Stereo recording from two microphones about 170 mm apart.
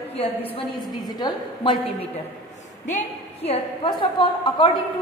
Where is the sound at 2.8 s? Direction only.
40° left (ahead or behind).